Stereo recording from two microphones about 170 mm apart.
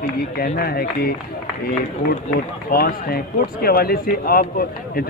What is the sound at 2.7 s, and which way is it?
A man's voice, 60° left (ahead or behind).